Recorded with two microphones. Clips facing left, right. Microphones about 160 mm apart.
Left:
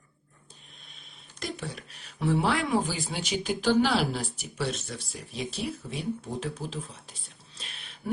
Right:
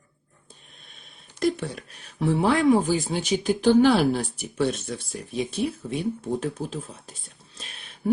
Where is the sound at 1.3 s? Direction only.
50° right (ahead or behind).